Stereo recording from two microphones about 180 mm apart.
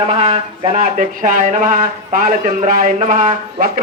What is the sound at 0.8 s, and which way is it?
Speech, 50° right (ahead or behind).